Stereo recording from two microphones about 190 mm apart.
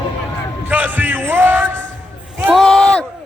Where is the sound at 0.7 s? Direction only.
10° right (ahead or behind).